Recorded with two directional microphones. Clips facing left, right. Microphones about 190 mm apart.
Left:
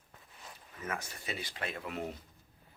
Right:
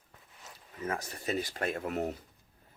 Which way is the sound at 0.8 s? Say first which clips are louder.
Right 4 dB; 35° right (ahead or behind).